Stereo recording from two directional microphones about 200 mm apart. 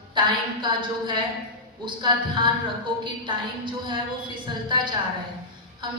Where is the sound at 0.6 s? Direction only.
25° right (ahead or behind).